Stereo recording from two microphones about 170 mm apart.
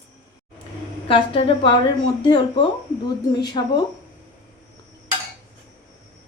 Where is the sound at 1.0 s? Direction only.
30° left (ahead or behind).